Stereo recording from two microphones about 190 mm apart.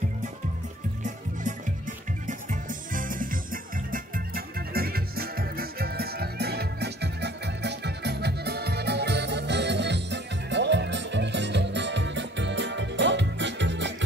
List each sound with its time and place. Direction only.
2.2 s music: 45° right (ahead or behind)
4.6 s music: 55° right (ahead or behind)